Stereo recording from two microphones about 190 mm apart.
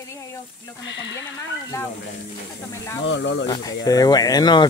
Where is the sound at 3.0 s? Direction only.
70° left (ahead or behind).